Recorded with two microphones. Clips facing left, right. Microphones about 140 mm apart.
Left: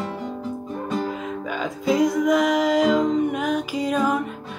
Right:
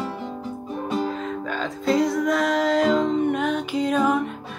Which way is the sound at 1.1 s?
5° left (ahead or behind).